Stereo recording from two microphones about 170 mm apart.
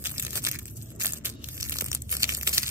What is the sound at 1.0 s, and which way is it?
Crushing, 15° right (ahead or behind).